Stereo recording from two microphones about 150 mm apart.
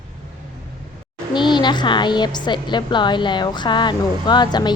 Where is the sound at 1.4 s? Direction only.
30° left (ahead or behind).